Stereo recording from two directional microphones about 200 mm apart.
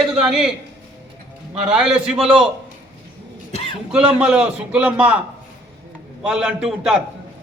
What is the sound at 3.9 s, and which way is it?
A man's voice, 5° right (ahead or behind).